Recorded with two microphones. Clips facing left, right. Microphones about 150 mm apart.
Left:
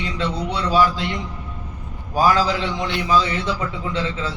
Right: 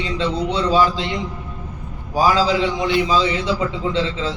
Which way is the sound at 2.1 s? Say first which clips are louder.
Right 1 dB; 15° right (ahead or behind).